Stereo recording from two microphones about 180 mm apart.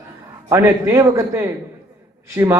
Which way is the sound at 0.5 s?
15° right (ahead or behind).